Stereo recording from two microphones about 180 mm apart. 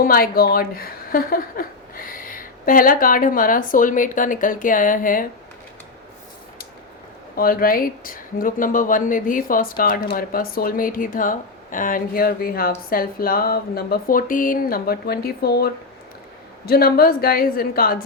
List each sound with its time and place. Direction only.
0.0 s speech: 55° left (ahead or behind)
7.3 s a woman's voice: 55° left (ahead or behind)